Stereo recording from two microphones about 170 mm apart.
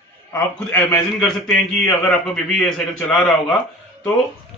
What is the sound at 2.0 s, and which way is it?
A man's voice, 5° left (ahead or behind).